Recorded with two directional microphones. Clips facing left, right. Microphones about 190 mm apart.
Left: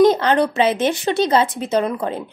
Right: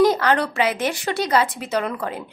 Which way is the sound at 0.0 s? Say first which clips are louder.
Left 3 dB; 20° left (ahead or behind).